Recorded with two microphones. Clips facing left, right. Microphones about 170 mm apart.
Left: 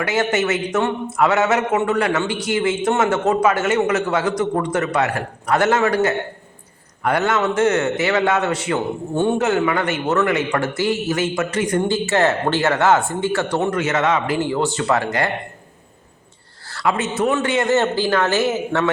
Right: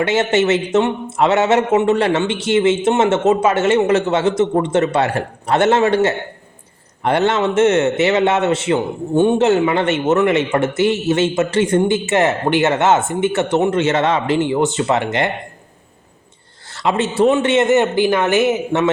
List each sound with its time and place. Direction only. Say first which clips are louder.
0.0 s a man's voice: right 4 dB; 25° right (ahead or behind)
16.6 s a man's voice: right 3 dB; 25° right (ahead or behind)